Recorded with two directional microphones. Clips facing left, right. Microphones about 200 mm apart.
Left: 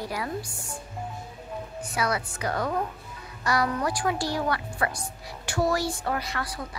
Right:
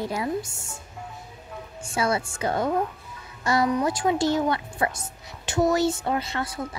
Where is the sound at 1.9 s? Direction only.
25° right (ahead or behind).